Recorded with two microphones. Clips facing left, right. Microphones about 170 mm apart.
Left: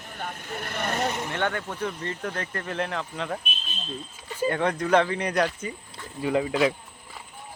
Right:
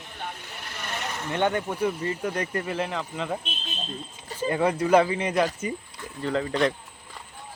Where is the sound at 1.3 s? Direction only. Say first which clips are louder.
Right 4 dB; 15° right (ahead or behind).